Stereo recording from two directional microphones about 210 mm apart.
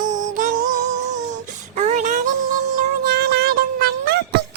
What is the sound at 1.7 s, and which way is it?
Child singing, 35° right (ahead or behind).